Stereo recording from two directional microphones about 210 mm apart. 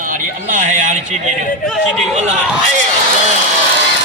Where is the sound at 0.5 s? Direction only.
35° right (ahead or behind).